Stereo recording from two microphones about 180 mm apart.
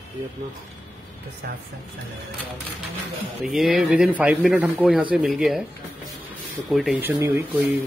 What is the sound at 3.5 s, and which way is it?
Speech, centre (ahead or behind).